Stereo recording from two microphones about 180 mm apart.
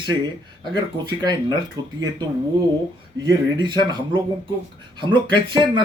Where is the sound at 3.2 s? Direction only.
25° right (ahead or behind).